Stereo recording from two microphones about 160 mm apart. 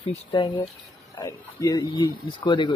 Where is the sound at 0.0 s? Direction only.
30° left (ahead or behind).